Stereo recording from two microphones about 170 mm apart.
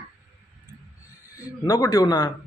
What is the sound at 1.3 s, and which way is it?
Speech, 20° left (ahead or behind).